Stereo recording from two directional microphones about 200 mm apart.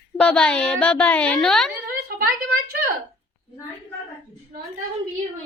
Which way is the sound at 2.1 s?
50° right (ahead or behind).